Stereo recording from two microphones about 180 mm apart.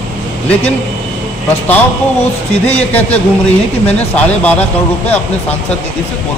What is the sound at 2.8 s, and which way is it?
Speech, 10° left (ahead or behind).